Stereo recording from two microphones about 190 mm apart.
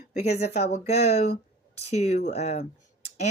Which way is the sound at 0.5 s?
35° left (ahead or behind).